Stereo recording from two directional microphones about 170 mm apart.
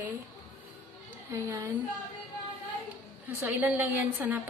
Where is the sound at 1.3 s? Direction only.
20° right (ahead or behind).